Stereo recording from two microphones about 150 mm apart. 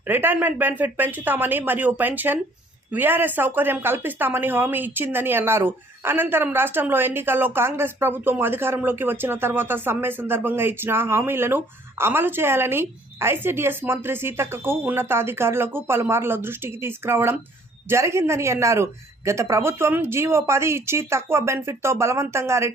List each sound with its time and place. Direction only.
0.1 s a woman's voice: 15° right (ahead or behind)